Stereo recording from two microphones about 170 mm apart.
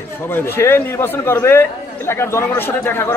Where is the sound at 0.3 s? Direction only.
15° left (ahead or behind).